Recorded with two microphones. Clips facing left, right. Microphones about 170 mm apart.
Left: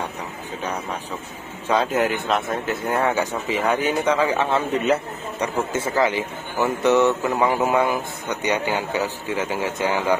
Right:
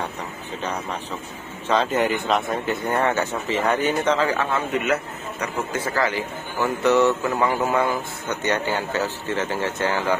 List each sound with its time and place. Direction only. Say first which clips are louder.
1.7 s speech: even; 10° left (ahead or behind)
4.3 s speech: left 2 dB; 25° left (ahead or behind)